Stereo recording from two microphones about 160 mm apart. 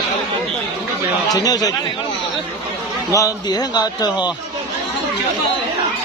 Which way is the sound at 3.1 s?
25° left (ahead or behind).